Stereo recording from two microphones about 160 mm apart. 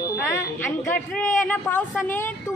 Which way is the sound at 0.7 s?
10° left (ahead or behind).